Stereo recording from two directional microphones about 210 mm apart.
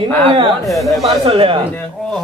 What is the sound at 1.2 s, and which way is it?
Speech, 30° right (ahead or behind).